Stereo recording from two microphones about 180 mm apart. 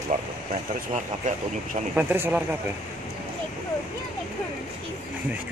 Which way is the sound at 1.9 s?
10° right (ahead or behind).